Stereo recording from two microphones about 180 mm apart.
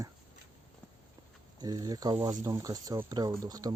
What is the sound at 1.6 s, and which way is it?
Speech, 20° right (ahead or behind).